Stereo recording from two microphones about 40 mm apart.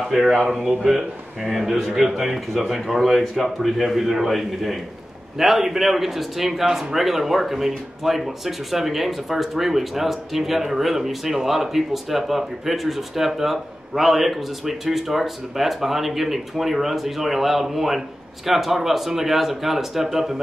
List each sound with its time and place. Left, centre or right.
0.1 s speech: centre